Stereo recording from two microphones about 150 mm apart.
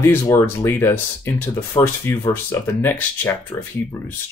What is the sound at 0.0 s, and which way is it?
Speech, 20° left (ahead or behind).